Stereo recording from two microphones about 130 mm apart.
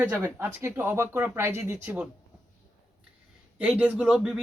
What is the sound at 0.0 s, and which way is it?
Speech, 15° right (ahead or behind).